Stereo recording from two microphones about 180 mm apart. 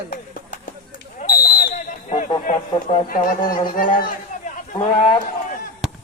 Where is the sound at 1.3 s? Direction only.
55° left (ahead or behind).